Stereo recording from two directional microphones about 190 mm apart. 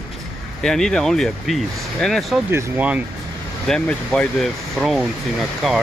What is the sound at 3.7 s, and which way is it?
Speech, 5° left (ahead or behind).